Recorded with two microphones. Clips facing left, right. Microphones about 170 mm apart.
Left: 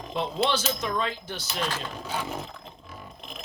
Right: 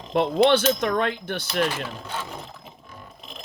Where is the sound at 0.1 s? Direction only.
60° right (ahead or behind).